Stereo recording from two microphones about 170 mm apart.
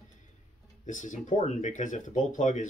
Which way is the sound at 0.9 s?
45° left (ahead or behind).